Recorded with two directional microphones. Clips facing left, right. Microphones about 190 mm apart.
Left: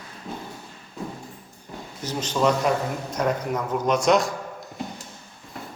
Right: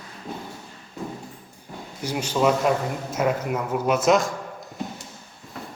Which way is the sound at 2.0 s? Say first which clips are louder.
Right 1 dB; 10° right (ahead or behind).